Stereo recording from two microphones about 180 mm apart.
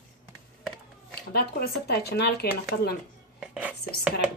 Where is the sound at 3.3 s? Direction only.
5° right (ahead or behind).